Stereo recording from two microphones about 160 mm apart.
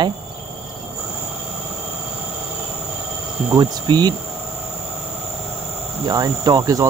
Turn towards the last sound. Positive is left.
turn(degrees=-20)  # may be behind; listen again after turning